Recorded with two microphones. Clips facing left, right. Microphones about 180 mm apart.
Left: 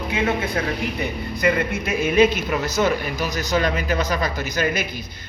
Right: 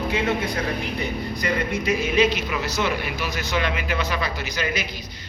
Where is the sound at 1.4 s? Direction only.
50° left (ahead or behind).